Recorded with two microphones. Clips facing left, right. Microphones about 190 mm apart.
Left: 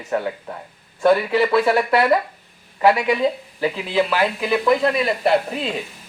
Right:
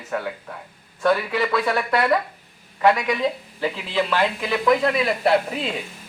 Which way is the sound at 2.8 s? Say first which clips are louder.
Left 3 dB; 5° left (ahead or behind).